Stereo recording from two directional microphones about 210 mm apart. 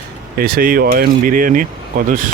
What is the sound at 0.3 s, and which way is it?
Speech, 45° right (ahead or behind).